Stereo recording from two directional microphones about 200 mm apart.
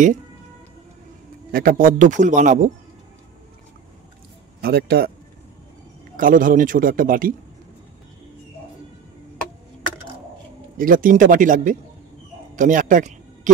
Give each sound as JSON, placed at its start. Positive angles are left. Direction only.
{"t": 1.5, "sound": "a man's voice", "side_deg": -45}
{"t": 4.6, "sound": "a man's voice", "side_deg": -50}
{"t": 6.1, "sound": "a man's voice", "side_deg": -40}
{"t": 10.8, "sound": "a man's voice", "side_deg": -45}